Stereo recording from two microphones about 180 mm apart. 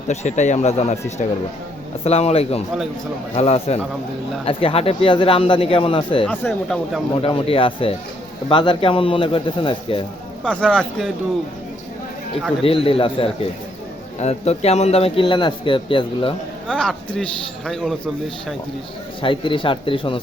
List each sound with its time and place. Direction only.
0.1 s a man's voice: 40° left (ahead or behind)
6.2 s speech: 5° left (ahead or behind)
7.2 s a man's voice: 30° left (ahead or behind)
10.4 s speech: 5° left (ahead or behind)
12.6 s a man's voice: 30° left (ahead or behind)
16.6 s speech: 5° left (ahead or behind)
19.2 s speech: 30° left (ahead or behind)